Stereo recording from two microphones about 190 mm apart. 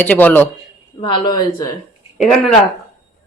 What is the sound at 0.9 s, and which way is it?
Music, 25° left (ahead or behind).